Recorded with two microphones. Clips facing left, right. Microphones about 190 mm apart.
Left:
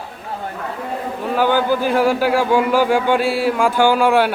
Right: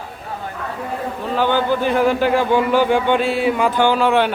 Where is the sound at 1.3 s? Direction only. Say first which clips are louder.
Left 1 dB; 10° left (ahead or behind).